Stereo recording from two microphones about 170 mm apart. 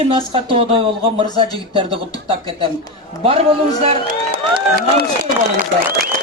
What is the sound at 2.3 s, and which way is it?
Speech, 30° right (ahead or behind).